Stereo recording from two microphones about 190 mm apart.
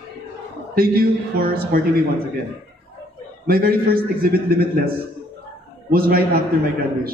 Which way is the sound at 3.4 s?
50° right (ahead or behind).